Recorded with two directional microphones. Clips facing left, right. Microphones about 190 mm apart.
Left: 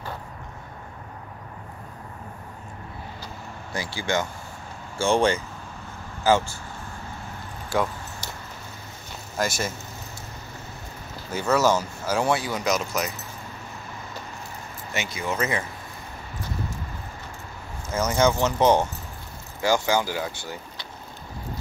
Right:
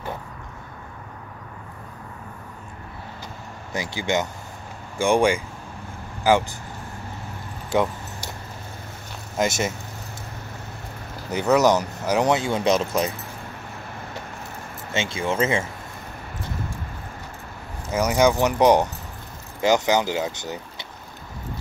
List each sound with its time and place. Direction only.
3.7 s speech: 20° right (ahead or behind)
7.7 s keys jangling: 20° right (ahead or behind)
9.4 s speech: 20° right (ahead or behind)
11.3 s speech: 15° right (ahead or behind)
14.9 s speech: 25° right (ahead or behind)
17.9 s speech: 15° right (ahead or behind)